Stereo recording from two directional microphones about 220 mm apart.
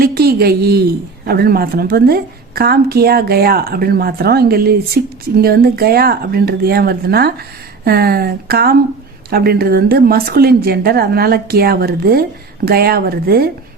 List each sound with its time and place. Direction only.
0.0 s a woman's voice: 45° right (ahead or behind)